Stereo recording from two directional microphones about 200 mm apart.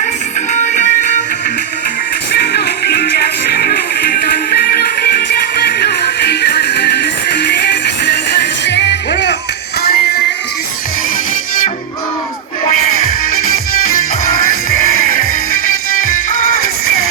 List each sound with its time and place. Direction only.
0.5 s music: 40° left (ahead or behind)
2.3 s music: 55° left (ahead or behind)
15.6 s music: 45° left (ahead or behind)